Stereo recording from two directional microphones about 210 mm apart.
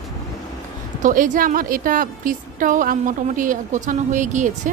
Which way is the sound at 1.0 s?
40° right (ahead or behind).